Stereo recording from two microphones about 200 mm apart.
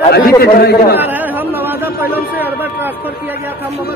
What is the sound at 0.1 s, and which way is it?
Speech, 50° left (ahead or behind).